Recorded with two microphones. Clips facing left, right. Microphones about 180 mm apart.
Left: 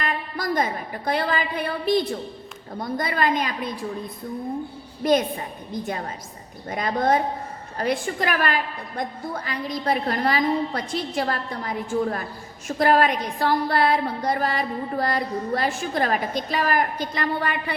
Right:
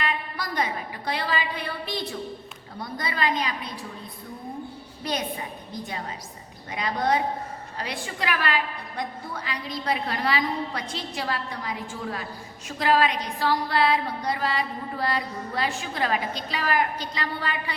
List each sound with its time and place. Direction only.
0.0 s a woman's voice: 45° left (ahead or behind)
5.0 s a woman's voice: 50° left (ahead or behind)
6.7 s a woman's voice: 45° left (ahead or behind)